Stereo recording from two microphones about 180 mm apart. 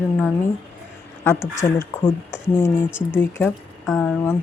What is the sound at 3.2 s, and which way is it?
Speech, 10° left (ahead or behind).